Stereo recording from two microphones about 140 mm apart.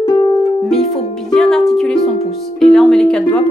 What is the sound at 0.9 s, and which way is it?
Speech, 5° left (ahead or behind).